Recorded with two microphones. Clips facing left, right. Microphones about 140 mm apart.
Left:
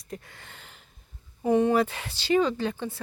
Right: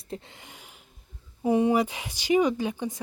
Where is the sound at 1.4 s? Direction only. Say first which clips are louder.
Even; 10° right (ahead or behind).